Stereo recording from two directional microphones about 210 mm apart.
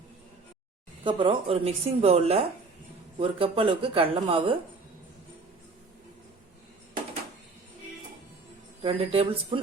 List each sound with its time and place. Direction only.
1.0 s a woman's voice: 25° right (ahead or behind)
8.8 s a woman's voice: 25° right (ahead or behind)